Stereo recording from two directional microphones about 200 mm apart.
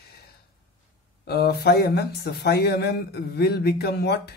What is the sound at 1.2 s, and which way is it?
Speech, 55° left (ahead or behind).